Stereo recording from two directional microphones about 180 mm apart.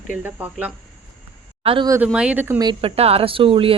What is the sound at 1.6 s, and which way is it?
Speech, 30° right (ahead or behind).